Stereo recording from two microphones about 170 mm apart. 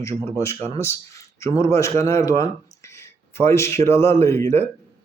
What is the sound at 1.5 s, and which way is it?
Speech, 15° left (ahead or behind).